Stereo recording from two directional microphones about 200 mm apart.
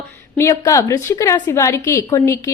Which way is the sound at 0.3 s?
15° left (ahead or behind).